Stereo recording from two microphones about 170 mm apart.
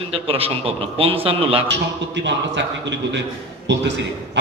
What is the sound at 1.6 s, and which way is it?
A man's voice, 90° right.